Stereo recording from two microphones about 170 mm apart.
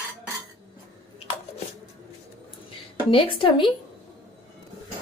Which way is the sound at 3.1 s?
30° left (ahead or behind).